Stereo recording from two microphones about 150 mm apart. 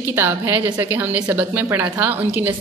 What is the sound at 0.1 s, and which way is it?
A woman's voice, 15° right (ahead or behind).